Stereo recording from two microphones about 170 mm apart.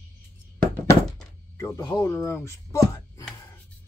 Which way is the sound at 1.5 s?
20° left (ahead or behind).